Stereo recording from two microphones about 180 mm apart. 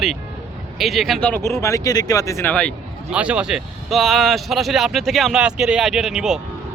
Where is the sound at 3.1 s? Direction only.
5° right (ahead or behind).